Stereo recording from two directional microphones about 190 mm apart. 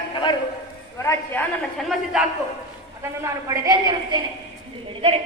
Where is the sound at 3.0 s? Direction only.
15° right (ahead or behind).